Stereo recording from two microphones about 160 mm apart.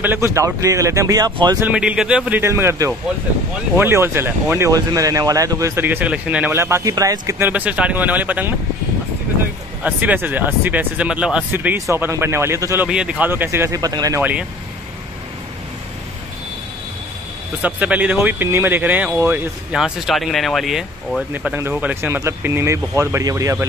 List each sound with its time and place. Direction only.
0.0 s speech: 15° right (ahead or behind)
1.7 s speech: 5° right (ahead or behind)
9.8 s speech: 10° right (ahead or behind)
12.8 s speech: 5° right (ahead or behind); by 14.2 s 20° right (ahead or behind)
17.6 s speech: 10° right (ahead or behind)
19.7 s speech: 5° right (ahead or behind); by 23.7 s 20° right (ahead or behind)